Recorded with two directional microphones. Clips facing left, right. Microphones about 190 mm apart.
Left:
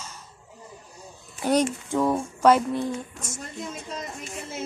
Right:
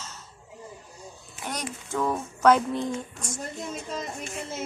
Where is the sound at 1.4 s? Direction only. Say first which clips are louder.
Left 12 dB; 30° left (ahead or behind).